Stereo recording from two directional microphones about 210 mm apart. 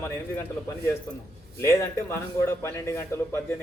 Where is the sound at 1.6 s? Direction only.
15° left (ahead or behind).